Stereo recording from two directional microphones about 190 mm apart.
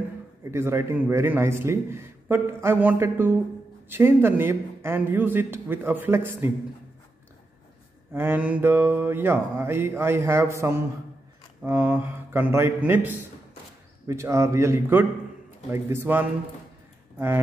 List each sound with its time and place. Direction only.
0.4 s a man's voice: 15° right (ahead or behind)
8.1 s a man's voice: 10° right (ahead or behind)